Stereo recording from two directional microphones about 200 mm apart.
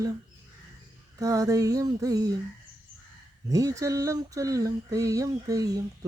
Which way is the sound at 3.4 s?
15° right (ahead or behind).